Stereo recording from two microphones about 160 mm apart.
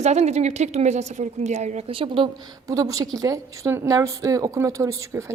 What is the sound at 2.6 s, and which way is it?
A woman's voice, 20° right (ahead or behind).